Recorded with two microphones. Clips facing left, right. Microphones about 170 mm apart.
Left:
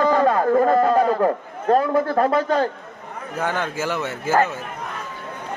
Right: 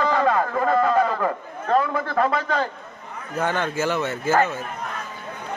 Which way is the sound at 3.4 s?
10° left (ahead or behind).